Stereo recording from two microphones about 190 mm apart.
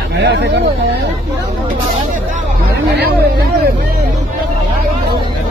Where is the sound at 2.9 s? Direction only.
55° right (ahead or behind).